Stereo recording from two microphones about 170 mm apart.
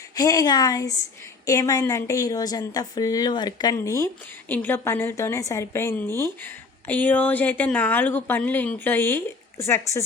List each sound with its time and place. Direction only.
0.2 s speech: 20° left (ahead or behind)